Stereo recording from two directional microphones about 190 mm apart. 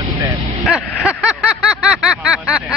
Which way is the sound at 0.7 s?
5° right (ahead or behind).